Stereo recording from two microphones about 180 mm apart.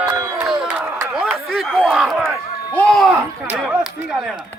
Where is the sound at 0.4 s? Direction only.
Centre (ahead or behind).